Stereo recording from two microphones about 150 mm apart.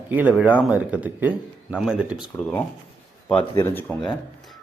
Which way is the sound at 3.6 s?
15° left (ahead or behind).